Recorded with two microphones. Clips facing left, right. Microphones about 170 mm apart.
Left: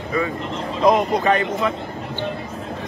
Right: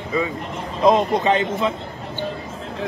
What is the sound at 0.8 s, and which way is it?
Speech, 25° right (ahead or behind).